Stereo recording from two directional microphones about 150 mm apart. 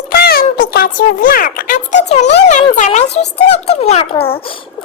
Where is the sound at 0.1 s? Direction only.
90° left.